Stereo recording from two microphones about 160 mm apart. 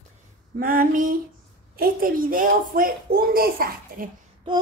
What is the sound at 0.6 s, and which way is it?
A child's voice, 60° right (ahead or behind).